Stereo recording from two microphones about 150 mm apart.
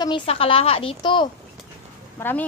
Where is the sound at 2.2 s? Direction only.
15° left (ahead or behind).